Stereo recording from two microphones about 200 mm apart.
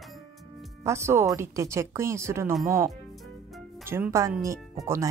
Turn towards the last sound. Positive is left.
turn(degrees=-15)  # may be behind; listen again after turning